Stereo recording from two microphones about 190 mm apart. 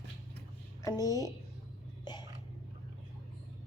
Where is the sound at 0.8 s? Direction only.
20° left (ahead or behind).